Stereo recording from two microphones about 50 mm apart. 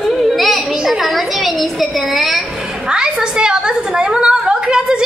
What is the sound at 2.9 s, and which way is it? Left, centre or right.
A woman's voice, centre.